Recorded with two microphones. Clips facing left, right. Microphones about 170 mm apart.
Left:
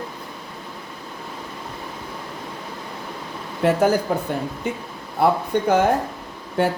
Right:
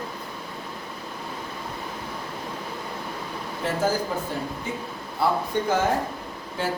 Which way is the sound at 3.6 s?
65° left (ahead or behind).